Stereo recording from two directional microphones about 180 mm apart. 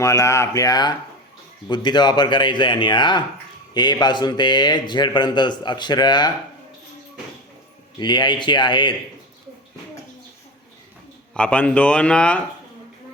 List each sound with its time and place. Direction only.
0.0 s a man's voice: 15° left (ahead or behind)
7.9 s a man's voice: 25° left (ahead or behind)
11.3 s speech: 5° left (ahead or behind)